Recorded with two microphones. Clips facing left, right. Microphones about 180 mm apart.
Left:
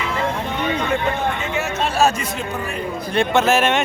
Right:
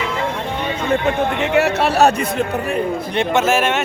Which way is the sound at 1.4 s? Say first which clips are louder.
Right 7 dB; 65° right (ahead or behind).